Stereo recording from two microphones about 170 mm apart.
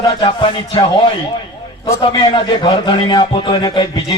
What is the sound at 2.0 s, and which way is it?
Speech, 30° left (ahead or behind).